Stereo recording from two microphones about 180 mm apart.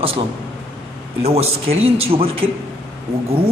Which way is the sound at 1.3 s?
35° right (ahead or behind).